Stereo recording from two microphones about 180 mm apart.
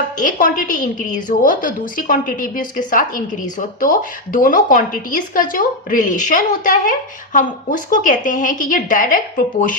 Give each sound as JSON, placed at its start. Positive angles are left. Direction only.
{"t": 0.2, "sound": "a woman's voice", "side_deg": 50}